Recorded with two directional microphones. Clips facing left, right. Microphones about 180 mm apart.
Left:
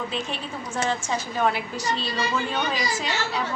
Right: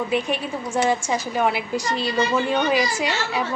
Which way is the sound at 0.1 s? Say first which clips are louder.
Right 7 dB; 10° right (ahead or behind).